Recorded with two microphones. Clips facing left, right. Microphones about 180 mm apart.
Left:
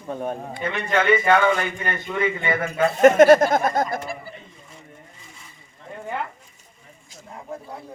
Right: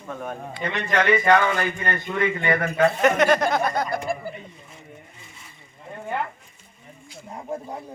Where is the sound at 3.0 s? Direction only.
45° left (ahead or behind).